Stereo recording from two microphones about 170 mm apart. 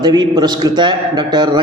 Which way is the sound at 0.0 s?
25° right (ahead or behind).